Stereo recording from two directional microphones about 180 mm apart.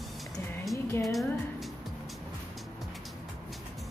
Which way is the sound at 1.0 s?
Centre (ahead or behind).